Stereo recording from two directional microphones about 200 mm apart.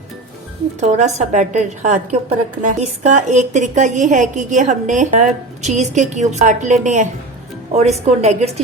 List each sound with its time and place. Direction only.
0.8 s a woman's voice: 35° right (ahead or behind)